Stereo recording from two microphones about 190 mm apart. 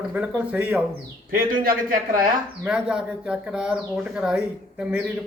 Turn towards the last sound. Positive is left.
turn(degrees=-5)  # may be behind; listen again after turning